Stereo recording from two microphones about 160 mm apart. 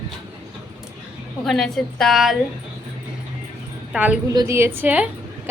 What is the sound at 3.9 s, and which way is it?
A woman's voice, 5° right (ahead or behind).